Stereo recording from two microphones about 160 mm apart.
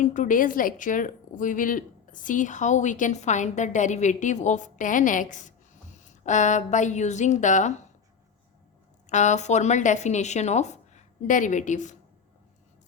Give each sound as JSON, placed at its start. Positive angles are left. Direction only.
{"t": 0.0, "sound": "a woman's voice", "side_deg": 55}
{"t": 9.0, "sound": "a woman's voice", "side_deg": 45}